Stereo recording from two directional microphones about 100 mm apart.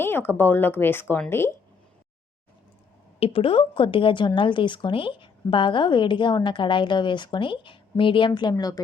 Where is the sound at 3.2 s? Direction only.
70° left (ahead or behind).